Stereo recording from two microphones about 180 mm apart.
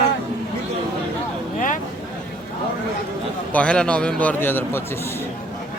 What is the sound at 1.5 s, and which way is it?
Vehicle, 45° left (ahead or behind).